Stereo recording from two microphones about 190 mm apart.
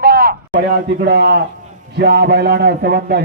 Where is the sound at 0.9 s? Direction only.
60° right (ahead or behind).